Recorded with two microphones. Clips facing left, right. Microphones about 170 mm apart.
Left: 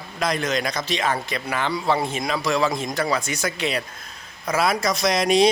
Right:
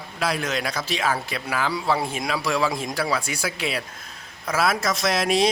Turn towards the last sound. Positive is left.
turn(degrees=-5)  # may be behind; listen again after turning